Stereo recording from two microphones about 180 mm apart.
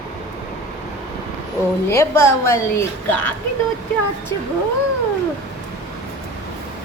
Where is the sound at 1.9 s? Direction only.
15° left (ahead or behind).